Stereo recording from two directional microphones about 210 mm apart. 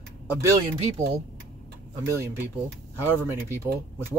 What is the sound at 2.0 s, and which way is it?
Speech, 15° right (ahead or behind).